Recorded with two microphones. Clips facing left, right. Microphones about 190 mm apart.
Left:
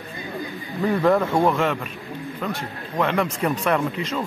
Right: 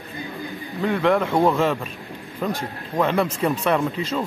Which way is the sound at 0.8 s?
5° left (ahead or behind).